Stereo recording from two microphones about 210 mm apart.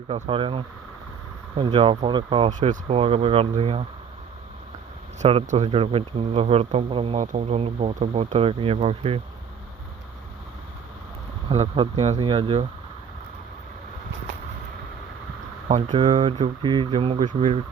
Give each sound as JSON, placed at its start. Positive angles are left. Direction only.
{"t": 0.1, "sound": "speech", "side_deg": -25}
{"t": 5.2, "sound": "speech", "side_deg": -30}
{"t": 11.4, "sound": "speech", "side_deg": -30}
{"t": 15.7, "sound": "speech", "side_deg": -25}